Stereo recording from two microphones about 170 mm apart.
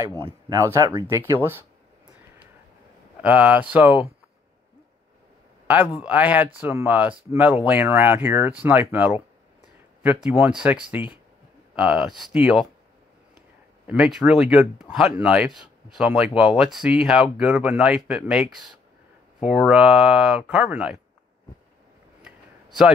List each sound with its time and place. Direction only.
0.2 s speech: 20° right (ahead or behind)
3.2 s speech: 10° right (ahead or behind)
5.9 s speech: 10° right (ahead or behind)
13.8 s speech: centre (ahead or behind)
22.2 s a sound: 5° right (ahead or behind)